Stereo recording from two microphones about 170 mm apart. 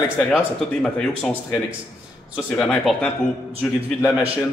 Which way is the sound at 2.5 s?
5° left (ahead or behind).